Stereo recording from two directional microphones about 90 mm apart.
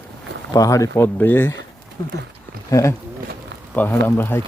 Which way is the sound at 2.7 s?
35° left (ahead or behind).